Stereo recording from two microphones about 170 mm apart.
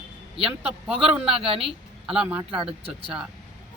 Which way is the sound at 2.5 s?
35° right (ahead or behind).